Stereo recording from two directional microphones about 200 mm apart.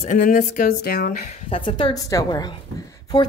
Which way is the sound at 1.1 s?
30° left (ahead or behind).